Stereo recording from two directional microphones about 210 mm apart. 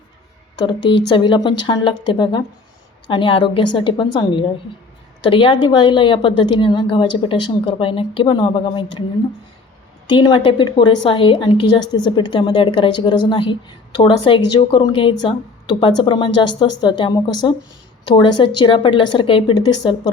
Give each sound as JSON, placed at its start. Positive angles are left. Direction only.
{"t": 1.1, "sound": "a woman's voice", "side_deg": 20}
{"t": 10.1, "sound": "a woman's voice", "side_deg": 20}